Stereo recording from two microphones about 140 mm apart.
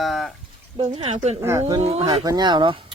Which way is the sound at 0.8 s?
45° right (ahead or behind).